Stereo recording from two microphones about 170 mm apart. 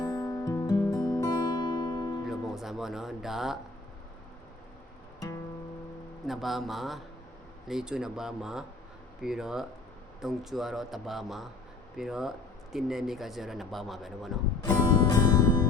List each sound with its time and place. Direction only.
0.0 s music: 20° left (ahead or behind)
2.2 s music: centre (ahead or behind)
6.2 s speech: centre (ahead or behind)
14.6 s music: 20° left (ahead or behind)